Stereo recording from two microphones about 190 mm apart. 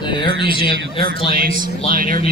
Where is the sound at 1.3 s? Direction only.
50° right (ahead or behind).